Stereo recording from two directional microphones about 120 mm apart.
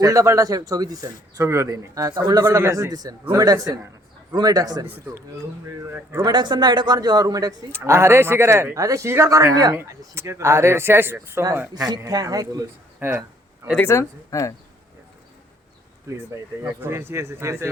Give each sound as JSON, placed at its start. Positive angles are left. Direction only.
{"t": 0.0, "sound": "a man's voice", "side_deg": -30}
{"t": 5.6, "sound": "a man's voice", "side_deg": -20}
{"t": 6.2, "sound": "speech", "side_deg": -40}
{"t": 7.7, "sound": "a man's voice", "side_deg": -20}
{"t": 11.9, "sound": "speech", "side_deg": -30}
{"t": 13.0, "sound": "speech", "side_deg": -20}
{"t": 13.8, "sound": "speech", "side_deg": 25}
{"t": 16.6, "sound": "a man's voice", "side_deg": -20}